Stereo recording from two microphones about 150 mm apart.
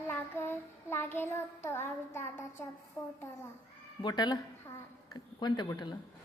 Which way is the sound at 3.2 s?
20° left (ahead or behind).